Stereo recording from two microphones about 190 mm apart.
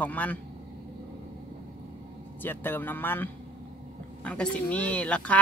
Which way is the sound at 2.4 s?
10° left (ahead or behind).